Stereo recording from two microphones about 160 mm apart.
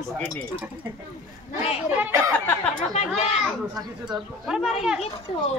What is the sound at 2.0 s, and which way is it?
Speech, 15° right (ahead or behind).